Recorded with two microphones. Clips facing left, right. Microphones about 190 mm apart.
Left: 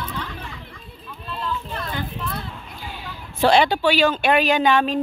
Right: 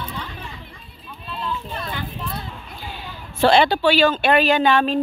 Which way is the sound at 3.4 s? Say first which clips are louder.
Right 1 dB; 10° left (ahead or behind).